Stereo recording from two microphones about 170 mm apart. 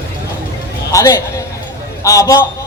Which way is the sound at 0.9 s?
15° left (ahead or behind).